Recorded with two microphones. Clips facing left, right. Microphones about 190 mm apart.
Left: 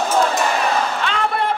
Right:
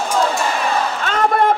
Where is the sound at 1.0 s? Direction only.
45° right (ahead or behind).